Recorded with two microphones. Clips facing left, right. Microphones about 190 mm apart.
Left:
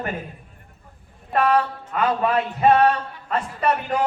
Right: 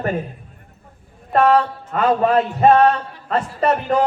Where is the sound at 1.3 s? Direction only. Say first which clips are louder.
Right 4 dB; 45° right (ahead or behind).